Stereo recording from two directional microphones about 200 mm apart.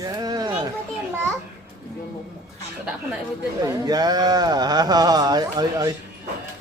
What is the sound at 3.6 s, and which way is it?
Speech, 20° right (ahead or behind).